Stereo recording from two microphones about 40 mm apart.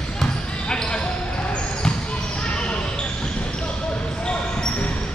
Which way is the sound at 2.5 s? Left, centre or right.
Left.